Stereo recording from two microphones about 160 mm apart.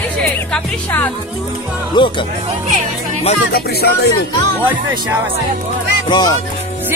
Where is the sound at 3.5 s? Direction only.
90° left.